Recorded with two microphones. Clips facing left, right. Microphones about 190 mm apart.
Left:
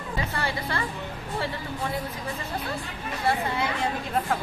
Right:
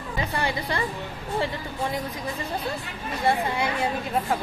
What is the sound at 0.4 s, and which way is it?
Speech, 15° right (ahead or behind).